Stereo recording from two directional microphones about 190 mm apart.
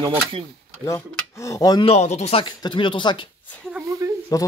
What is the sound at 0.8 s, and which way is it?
Speech, 15° left (ahead or behind).